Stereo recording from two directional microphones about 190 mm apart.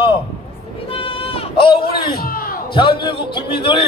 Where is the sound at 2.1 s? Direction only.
50° left (ahead or behind).